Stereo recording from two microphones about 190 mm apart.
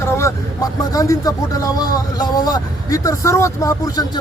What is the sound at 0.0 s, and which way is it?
Speech, 15° left (ahead or behind).